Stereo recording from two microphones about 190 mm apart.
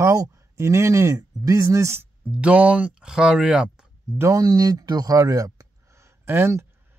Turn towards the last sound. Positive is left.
turn(degrees=-10)  # may be behind; listen again after turning